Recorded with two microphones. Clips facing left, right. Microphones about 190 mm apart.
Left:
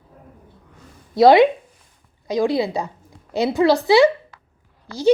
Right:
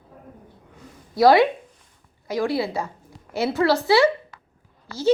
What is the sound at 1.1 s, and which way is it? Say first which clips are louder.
A woman's voice: left 4 dB; 20° left (ahead or behind).